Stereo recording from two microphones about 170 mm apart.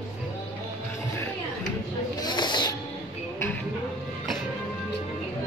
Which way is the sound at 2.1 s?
25° left (ahead or behind).